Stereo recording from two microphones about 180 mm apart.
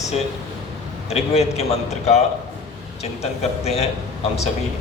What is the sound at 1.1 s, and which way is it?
A man's voice, 35° left (ahead or behind).